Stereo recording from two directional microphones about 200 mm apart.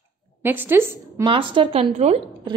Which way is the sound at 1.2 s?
25° right (ahead or behind).